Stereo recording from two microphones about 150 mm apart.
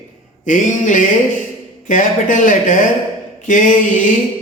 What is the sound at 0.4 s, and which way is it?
Speech, 60° left (ahead or behind).